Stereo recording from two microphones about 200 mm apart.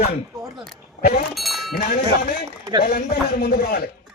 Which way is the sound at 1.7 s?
50° left (ahead or behind).